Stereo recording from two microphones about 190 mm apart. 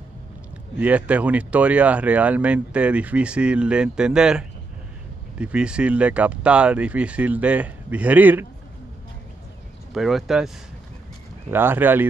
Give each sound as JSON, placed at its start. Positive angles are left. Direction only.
{"t": 0.7, "sound": "speech", "side_deg": -10}
{"t": 9.9, "sound": "speech", "side_deg": 0}
{"t": 11.5, "sound": "speech", "side_deg": -10}